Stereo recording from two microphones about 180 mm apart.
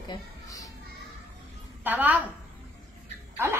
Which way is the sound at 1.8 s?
10° right (ahead or behind).